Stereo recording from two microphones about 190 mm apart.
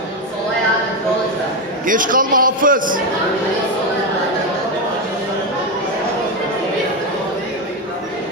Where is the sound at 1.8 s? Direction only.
45° right (ahead or behind).